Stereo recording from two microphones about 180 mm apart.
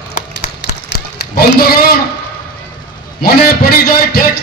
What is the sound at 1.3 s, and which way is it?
Speech, 55° left (ahead or behind).